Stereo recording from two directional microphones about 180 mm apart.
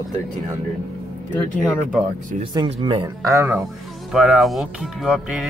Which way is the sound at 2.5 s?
25° right (ahead or behind).